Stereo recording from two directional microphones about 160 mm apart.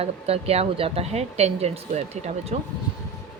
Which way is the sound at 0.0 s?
40° right (ahead or behind).